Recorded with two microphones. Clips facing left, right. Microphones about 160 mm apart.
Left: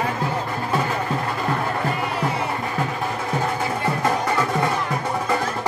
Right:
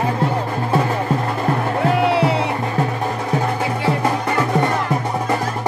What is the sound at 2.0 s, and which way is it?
Music, 80° right.